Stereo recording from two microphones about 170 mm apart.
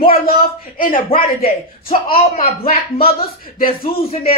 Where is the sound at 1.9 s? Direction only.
30° left (ahead or behind).